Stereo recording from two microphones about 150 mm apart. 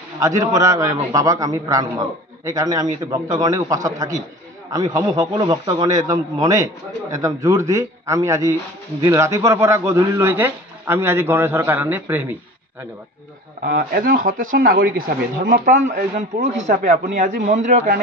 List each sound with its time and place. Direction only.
0.2 s a man's voice: 20° right (ahead or behind)
13.7 s speech: 80° right; by 17.9 s 55° right (ahead or behind)